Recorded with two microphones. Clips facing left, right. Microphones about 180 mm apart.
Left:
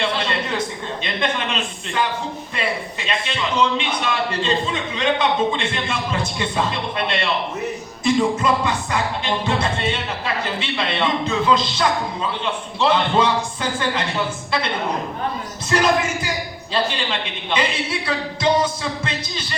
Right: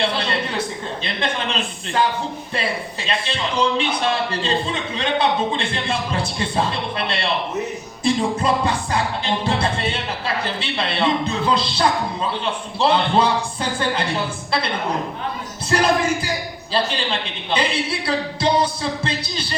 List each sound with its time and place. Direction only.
1.0 s a man's voice: 30° right (ahead or behind)
3.1 s speech: 35° right (ahead or behind)
15.7 s speech: 30° right (ahead or behind)